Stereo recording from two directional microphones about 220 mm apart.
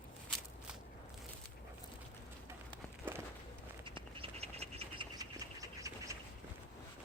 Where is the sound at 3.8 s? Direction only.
25° right (ahead or behind).